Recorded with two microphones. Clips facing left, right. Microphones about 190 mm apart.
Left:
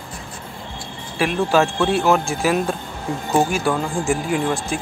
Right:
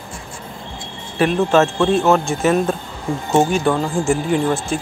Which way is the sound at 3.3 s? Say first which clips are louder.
Right 3 dB; 25° right (ahead or behind).